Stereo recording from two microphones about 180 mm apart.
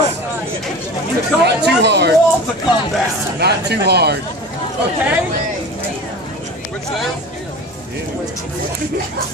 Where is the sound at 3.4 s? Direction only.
65° right (ahead or behind).